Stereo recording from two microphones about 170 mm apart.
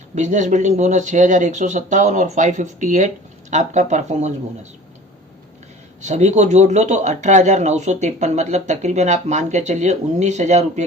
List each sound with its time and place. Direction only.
0.2 s speech: 45° right (ahead or behind)
6.0 s speech: 45° right (ahead or behind)